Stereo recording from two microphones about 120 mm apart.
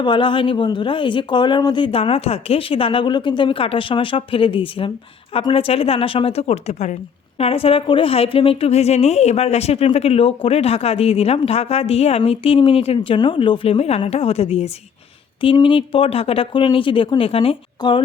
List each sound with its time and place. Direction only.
0.0 s speech: 45° left (ahead or behind); by 6.9 s 70° left (ahead or behind)
7.3 s a woman's voice: 55° left (ahead or behind)
13.1 s a woman's voice: 45° left (ahead or behind)
15.5 s speech: 45° left (ahead or behind)